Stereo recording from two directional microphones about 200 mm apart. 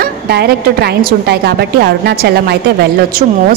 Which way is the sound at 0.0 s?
55° right (ahead or behind).